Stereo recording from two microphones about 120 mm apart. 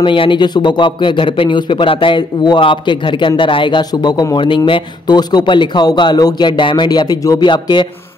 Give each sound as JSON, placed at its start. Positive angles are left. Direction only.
{"t": 0.0, "sound": "a man's voice", "side_deg": 45}